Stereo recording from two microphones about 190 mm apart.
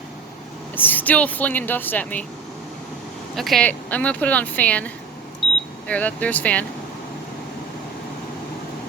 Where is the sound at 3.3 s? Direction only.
Centre (ahead or behind).